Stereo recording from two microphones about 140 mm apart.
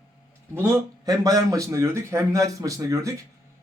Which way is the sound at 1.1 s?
25° right (ahead or behind).